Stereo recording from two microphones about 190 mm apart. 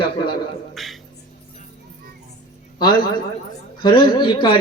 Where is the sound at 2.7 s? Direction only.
25° left (ahead or behind).